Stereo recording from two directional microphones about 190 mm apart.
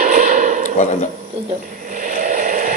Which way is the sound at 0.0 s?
40° right (ahead or behind).